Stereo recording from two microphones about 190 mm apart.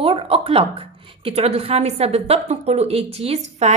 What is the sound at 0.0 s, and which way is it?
A woman's voice, 30° right (ahead or behind).